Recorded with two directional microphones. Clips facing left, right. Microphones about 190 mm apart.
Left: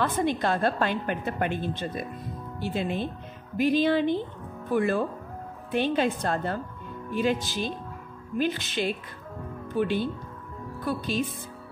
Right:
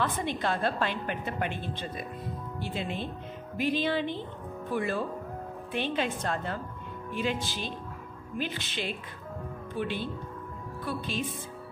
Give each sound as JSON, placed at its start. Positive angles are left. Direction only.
{"t": 0.0, "sound": "a woman's voice", "side_deg": 45}